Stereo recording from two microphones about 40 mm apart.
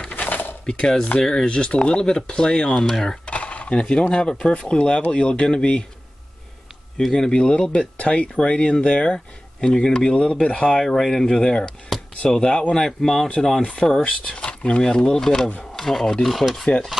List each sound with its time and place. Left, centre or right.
0.1 s a sound: left
0.7 s speech: centre
3.3 s a sound: left
4.1 s speech: left
7.0 s speech: centre
7.3 s speech: left
12.7 s speech: centre
13.6 s speech: left
16.3 s speech: centre